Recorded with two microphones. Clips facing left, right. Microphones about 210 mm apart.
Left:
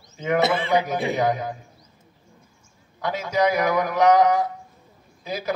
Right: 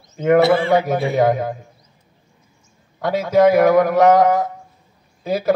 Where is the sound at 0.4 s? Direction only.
20° left (ahead or behind).